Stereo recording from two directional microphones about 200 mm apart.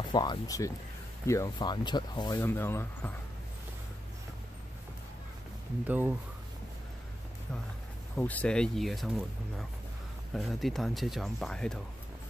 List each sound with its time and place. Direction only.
0.1 s speech: 20° left (ahead or behind)
5.9 s speech: 10° right (ahead or behind)
8.2 s speech: 10° left (ahead or behind)